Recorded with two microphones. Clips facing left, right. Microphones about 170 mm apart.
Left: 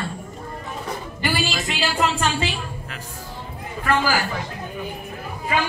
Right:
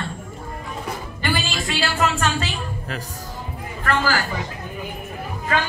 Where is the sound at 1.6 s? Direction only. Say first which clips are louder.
Right 2 dB; 20° left (ahead or behind).